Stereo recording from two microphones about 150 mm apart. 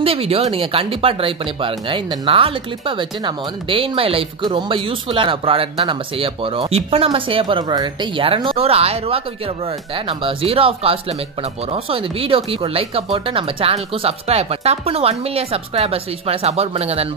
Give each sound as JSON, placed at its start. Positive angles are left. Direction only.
{"t": 0.0, "sound": "speech", "side_deg": -40}